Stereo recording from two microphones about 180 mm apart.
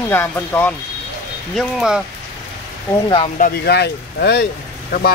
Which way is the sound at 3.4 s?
60° left (ahead or behind).